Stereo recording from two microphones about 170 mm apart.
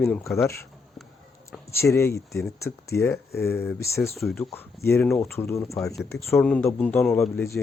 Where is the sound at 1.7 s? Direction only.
15° left (ahead or behind).